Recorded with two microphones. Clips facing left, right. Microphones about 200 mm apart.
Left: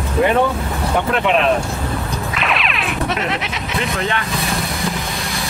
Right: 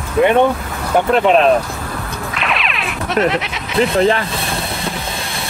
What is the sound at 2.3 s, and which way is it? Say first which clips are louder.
Music: right 1 dB; centre (ahead or behind).